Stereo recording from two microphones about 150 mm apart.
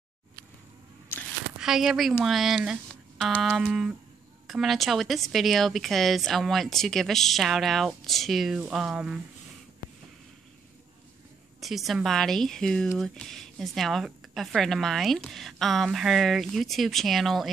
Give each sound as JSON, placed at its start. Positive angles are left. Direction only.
{"t": 1.6, "sound": "speech", "side_deg": -5}
{"t": 11.6, "sound": "speech", "side_deg": 0}